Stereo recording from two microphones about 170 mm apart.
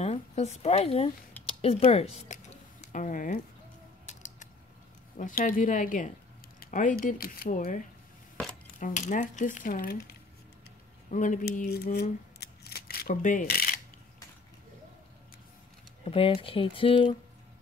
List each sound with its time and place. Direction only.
0.0 s speech: 40° left (ahead or behind)
4.0 s mechanisms: 45° left (ahead or behind)
5.1 s speech: 50° left (ahead or behind)
11.1 s speech: 50° left (ahead or behind)
16.0 s speech: 35° left (ahead or behind)